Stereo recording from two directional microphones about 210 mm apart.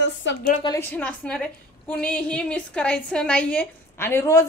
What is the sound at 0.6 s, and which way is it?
A woman's voice, 15° left (ahead or behind).